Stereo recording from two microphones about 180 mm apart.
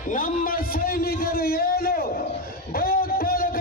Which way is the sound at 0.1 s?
50° left (ahead or behind).